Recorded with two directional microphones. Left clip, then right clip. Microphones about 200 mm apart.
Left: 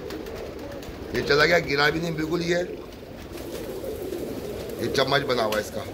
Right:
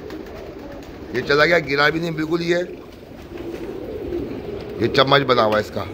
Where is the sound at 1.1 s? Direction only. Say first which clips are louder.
Right 4 dB; 50° right (ahead or behind).